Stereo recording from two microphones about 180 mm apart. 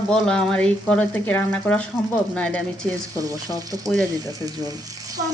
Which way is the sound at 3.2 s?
20° right (ahead or behind).